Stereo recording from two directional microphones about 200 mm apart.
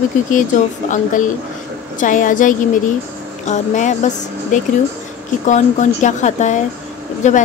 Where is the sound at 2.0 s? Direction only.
40° left (ahead or behind).